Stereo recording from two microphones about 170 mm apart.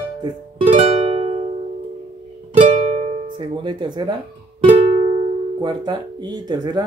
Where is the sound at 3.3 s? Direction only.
30° right (ahead or behind).